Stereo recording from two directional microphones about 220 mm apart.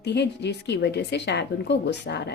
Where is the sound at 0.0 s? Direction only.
50° left (ahead or behind).